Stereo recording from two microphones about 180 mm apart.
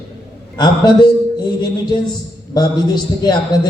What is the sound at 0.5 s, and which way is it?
Speech, 25° left (ahead or behind).